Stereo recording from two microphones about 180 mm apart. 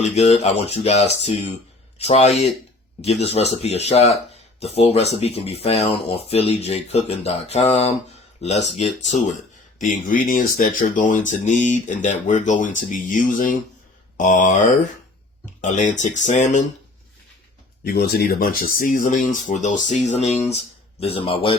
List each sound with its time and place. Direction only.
0.0 s speech: 40° left (ahead or behind)
17.8 s speech: 60° left (ahead or behind); by 21.5 s 30° left (ahead or behind)